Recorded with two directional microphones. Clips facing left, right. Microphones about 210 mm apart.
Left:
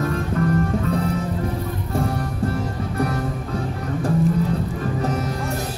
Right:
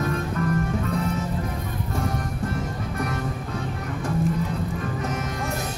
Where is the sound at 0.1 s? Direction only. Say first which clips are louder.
Left 4 dB; 35° left (ahead or behind).